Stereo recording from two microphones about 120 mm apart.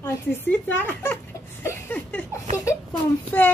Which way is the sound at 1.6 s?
20° left (ahead or behind).